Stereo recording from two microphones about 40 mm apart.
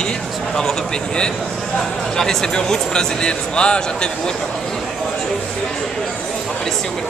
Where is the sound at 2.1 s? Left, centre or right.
Centre.